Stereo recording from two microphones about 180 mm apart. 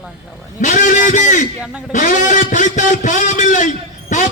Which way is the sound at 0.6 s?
45° left (ahead or behind).